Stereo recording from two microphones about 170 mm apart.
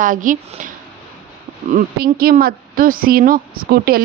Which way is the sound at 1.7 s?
60° right (ahead or behind).